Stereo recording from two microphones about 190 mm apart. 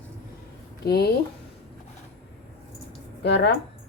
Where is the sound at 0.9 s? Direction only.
60° left (ahead or behind).